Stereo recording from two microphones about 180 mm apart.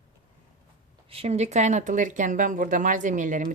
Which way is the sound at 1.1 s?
35° right (ahead or behind).